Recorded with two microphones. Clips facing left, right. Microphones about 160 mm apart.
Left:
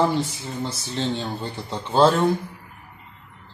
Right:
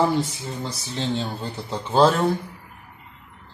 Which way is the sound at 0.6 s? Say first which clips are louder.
Left 2 dB; centre (ahead or behind).